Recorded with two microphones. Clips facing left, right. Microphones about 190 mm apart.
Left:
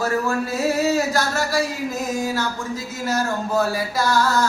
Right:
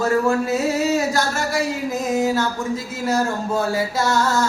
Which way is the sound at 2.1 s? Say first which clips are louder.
Right 8 dB; 20° right (ahead or behind).